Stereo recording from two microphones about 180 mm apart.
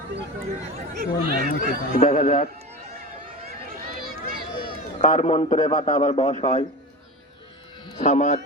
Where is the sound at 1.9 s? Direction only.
40° left (ahead or behind).